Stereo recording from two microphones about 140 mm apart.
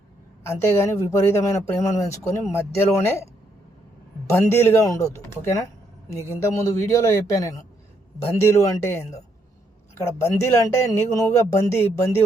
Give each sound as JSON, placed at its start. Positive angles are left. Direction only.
{"t": 0.4, "sound": "speech", "side_deg": 20}
{"t": 4.3, "sound": "a woman's voice", "side_deg": 20}